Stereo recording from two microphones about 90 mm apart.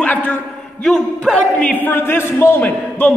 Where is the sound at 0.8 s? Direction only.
5° left (ahead or behind).